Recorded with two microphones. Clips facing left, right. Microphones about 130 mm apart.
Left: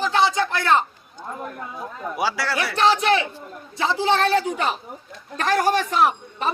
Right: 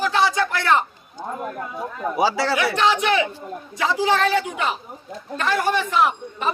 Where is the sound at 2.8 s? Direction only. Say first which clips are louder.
Left 3 dB; 35° left (ahead or behind).